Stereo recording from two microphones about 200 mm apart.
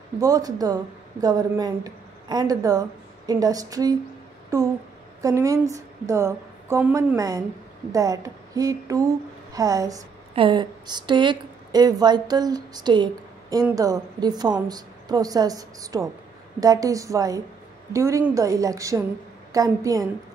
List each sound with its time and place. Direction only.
0.2 s a woman's voice: 20° right (ahead or behind)